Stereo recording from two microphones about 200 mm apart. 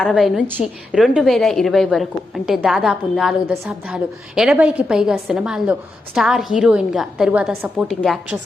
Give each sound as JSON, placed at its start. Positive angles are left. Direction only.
{"t": 0.0, "sound": "a woman's voice", "side_deg": 0}